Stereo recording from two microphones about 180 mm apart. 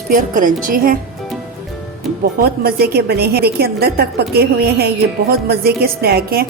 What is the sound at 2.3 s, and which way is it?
A woman's voice, 55° right (ahead or behind).